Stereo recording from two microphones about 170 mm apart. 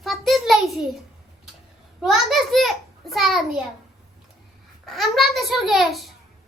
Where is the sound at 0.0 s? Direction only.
Centre (ahead or behind).